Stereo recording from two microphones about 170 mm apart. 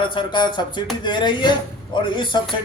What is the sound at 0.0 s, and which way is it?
A man's voice, 30° left (ahead or behind).